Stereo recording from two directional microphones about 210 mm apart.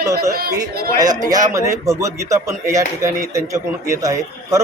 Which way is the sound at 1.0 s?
20° right (ahead or behind).